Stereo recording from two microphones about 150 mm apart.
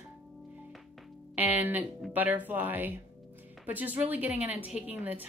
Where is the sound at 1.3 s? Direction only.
10° right (ahead or behind).